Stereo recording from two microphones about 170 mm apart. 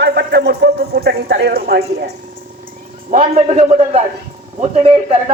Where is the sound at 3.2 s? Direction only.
40° right (ahead or behind).